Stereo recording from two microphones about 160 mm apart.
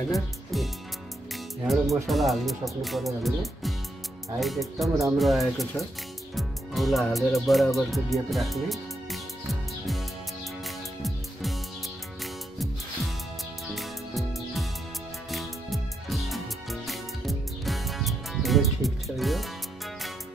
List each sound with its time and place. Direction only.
0.1 s speech: centre (ahead or behind)
1.3 s music: centre (ahead or behind)
2.0 s speech: centre (ahead or behind)
10.6 s music: centre (ahead or behind)
13.7 s music: centre (ahead or behind)